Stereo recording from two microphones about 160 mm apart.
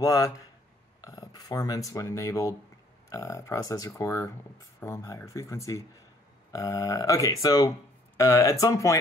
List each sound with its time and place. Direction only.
0.0 s speech: 20° left (ahead or behind)